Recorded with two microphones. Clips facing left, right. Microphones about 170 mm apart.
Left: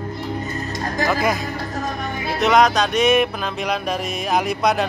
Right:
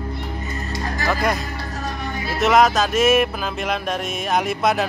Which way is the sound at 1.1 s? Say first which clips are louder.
Even; centre (ahead or behind).